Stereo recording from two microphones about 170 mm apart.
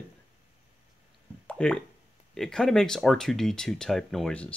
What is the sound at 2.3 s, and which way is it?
Speech, 5° left (ahead or behind).